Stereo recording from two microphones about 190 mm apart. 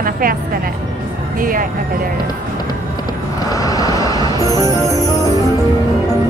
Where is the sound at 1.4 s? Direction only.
50° right (ahead or behind).